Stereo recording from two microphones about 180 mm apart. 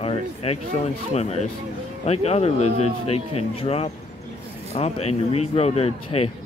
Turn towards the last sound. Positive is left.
turn(degrees=35)  # may be behind; listen again after turning